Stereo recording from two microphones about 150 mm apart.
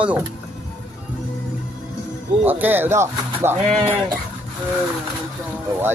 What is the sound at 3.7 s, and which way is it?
Speech, 50° right (ahead or behind).